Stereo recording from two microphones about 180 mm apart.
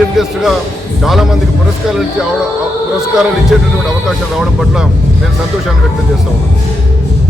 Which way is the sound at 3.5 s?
Centre (ahead or behind).